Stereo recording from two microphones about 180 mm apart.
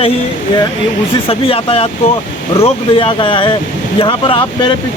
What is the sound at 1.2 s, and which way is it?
Speech, 30° left (ahead or behind).